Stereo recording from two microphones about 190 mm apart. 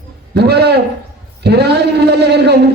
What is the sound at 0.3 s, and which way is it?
A man's voice, 60° right (ahead or behind).